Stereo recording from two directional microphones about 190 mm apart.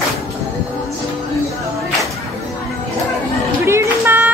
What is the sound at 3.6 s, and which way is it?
Music, 15° right (ahead or behind).